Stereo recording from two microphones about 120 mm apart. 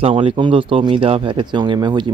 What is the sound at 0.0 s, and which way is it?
Speech, 50° right (ahead or behind).